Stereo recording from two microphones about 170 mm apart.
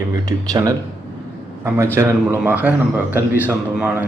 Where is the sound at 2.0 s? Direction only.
10° right (ahead or behind).